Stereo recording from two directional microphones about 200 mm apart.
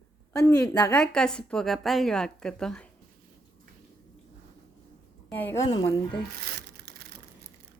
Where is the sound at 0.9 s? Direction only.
5° left (ahead or behind).